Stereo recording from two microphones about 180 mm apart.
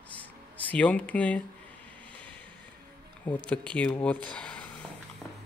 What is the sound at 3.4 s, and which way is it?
Speech, 5° left (ahead or behind).